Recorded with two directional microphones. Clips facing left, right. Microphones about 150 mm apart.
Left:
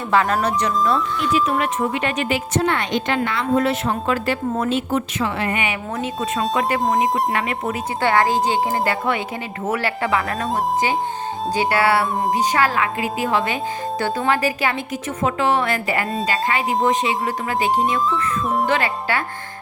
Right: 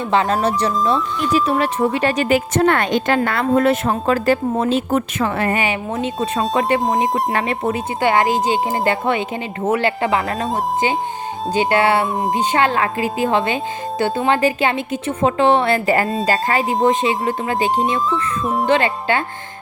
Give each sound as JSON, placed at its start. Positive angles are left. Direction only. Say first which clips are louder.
{"t": 0.1, "sound": "speech", "louder": "right 1 dB", "side_deg": -25}
{"t": 4.5, "sound": "speech", "louder": "right 3 dB", "side_deg": -30}
{"t": 4.9, "sound": "speech", "louder": "right 3 dB", "side_deg": -50}
{"t": 5.5, "sound": "speech", "louder": "right 3 dB", "side_deg": -30}
{"t": 11.5, "sound": "speech", "louder": "right 3 dB", "side_deg": -20}
{"t": 16.2, "sound": "speech", "louder": "right 3 dB", "side_deg": -45}
{"t": 16.6, "sound": "speech", "louder": "right 3 dB", "side_deg": -25}
{"t": 18.1, "sound": "music", "louder": "right 1 dB", "side_deg": 0}
{"t": 18.6, "sound": "speech", "louder": "right 4 dB", "side_deg": -25}